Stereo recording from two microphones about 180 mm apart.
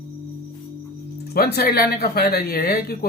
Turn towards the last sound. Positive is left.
turn(degrees=60)  # may be behind; listen again after turning